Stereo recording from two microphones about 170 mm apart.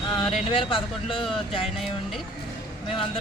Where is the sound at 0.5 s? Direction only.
30° left (ahead or behind).